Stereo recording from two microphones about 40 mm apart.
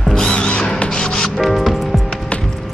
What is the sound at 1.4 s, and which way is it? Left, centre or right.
Music, centre.